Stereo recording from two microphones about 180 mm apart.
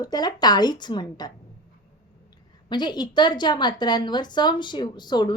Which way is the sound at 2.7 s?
25° left (ahead or behind).